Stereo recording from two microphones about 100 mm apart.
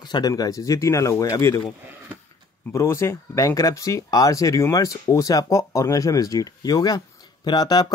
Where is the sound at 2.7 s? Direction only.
25° left (ahead or behind).